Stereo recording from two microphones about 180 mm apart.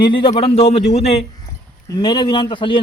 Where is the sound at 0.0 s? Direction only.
30° left (ahead or behind).